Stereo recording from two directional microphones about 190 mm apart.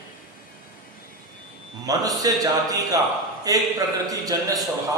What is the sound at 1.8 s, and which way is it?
A man's voice, 20° right (ahead or behind).